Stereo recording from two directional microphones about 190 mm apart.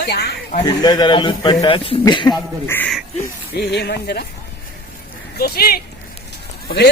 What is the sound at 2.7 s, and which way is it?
Speech, 10° left (ahead or behind).